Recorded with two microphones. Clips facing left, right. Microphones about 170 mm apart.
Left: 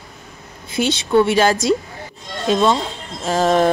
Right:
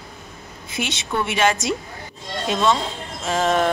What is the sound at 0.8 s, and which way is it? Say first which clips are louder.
Speech: left 10 dB; 35° left (ahead or behind).